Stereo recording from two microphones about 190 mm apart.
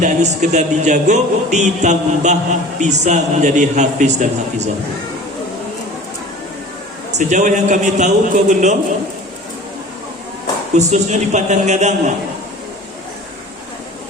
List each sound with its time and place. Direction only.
0.0 s speech: 40° right (ahead or behind)
7.2 s speech: 40° right (ahead or behind)
10.8 s speech: 35° right (ahead or behind)